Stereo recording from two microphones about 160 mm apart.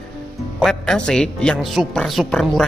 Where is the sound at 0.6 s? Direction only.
5° left (ahead or behind).